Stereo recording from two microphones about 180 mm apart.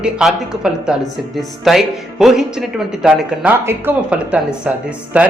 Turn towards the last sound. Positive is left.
turn(degrees=-10)  # may be behind; listen again after turning